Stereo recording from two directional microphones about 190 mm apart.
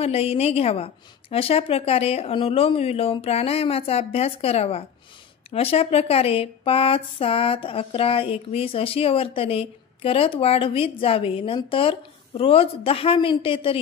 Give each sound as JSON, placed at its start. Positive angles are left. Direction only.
{"t": 0.0, "sound": "speech", "side_deg": 30}